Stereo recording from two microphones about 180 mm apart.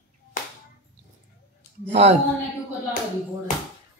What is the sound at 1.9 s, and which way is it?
Speech, 40° right (ahead or behind).